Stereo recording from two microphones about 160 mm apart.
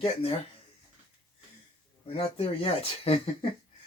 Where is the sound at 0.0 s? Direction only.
35° left (ahead or behind).